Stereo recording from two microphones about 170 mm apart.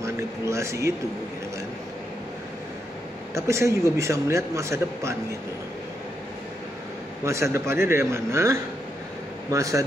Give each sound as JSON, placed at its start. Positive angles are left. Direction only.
{"t": 0.0, "sound": "speech", "side_deg": -15}
{"t": 3.3, "sound": "a man's voice", "side_deg": -15}
{"t": 7.2, "sound": "a man's voice", "side_deg": -15}